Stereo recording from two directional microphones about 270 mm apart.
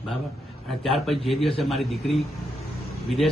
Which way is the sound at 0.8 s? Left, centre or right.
Centre.